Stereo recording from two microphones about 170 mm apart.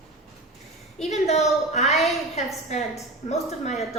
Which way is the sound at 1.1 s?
40° left (ahead or behind).